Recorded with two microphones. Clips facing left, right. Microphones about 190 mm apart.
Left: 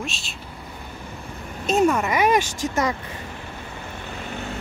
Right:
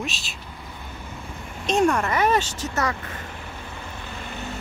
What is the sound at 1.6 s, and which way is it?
Speech, 5° left (ahead or behind).